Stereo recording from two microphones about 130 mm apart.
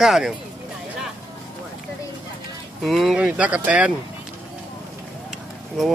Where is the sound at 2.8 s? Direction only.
Centre (ahead or behind).